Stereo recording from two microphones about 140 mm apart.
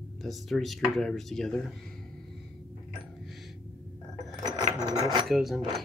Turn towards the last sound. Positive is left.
turn(degrees=0)  # may be behind; listen again after turning